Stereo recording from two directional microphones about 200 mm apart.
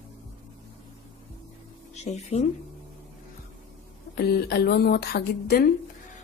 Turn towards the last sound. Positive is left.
turn(degrees=55)  # may be behind; listen again after turning